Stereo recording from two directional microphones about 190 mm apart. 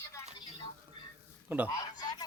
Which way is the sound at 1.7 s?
20° left (ahead or behind).